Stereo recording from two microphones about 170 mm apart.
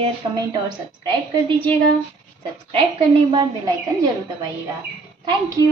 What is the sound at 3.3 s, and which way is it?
Speech, 25° right (ahead or behind).